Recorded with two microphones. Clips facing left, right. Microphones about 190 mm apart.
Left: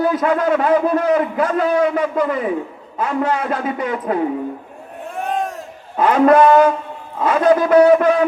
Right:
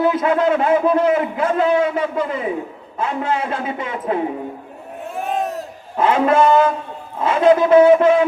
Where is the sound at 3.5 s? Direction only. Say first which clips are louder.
Left 3 dB; 25° right (ahead or behind).